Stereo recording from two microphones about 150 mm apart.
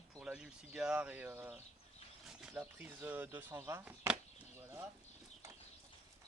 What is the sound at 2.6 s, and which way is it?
Speech, 10° right (ahead or behind).